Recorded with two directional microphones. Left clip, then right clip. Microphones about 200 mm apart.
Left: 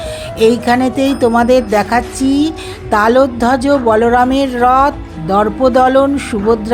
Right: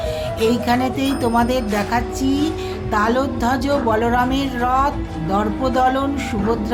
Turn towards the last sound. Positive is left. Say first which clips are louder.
# left 7 dB
turn(degrees=40)  # may be behind; listen again after turning